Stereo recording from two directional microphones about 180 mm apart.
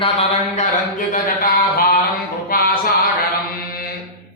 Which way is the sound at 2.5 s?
55° left (ahead or behind).